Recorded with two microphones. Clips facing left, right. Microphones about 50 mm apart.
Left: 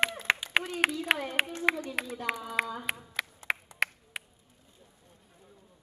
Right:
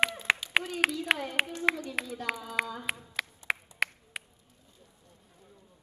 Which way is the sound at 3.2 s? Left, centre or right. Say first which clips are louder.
Even; centre.